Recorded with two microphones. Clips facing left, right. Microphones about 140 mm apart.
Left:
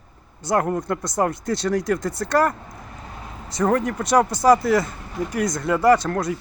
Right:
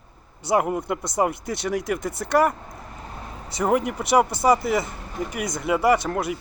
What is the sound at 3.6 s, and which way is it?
Speech, 10° right (ahead or behind).